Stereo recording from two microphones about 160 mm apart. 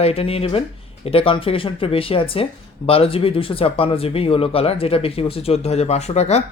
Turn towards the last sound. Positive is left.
turn(degrees=40)  # may be behind; listen again after turning